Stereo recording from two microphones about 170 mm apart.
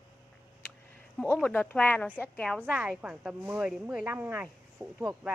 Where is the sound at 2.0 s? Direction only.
10° right (ahead or behind).